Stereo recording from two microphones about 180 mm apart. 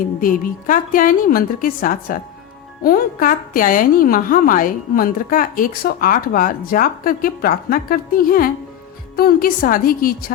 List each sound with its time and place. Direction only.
0.2 s a woman's voice: 50° left (ahead or behind)